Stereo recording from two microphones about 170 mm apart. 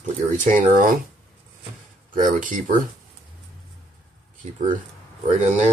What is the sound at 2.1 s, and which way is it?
Speech, 50° right (ahead or behind).